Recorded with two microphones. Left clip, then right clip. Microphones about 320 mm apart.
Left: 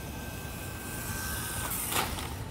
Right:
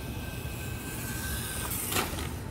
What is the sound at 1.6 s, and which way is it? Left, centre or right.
Vehicle, centre.